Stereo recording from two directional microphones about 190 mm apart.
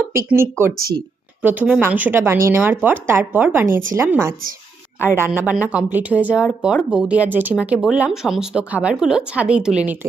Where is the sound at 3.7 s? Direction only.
45° right (ahead or behind).